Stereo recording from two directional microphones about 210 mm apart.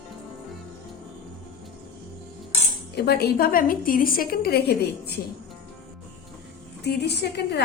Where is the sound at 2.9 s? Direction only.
50° left (ahead or behind).